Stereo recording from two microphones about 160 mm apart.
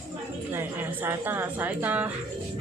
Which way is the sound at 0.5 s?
10° right (ahead or behind).